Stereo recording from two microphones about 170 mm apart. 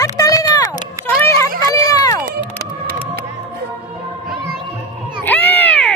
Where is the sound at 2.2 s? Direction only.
65° right (ahead or behind).